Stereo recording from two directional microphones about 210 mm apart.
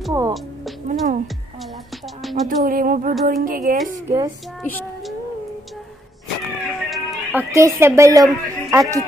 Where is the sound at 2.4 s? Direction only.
40° right (ahead or behind).